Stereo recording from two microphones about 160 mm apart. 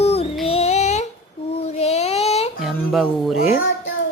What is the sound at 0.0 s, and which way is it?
Child singing, 40° left (ahead or behind).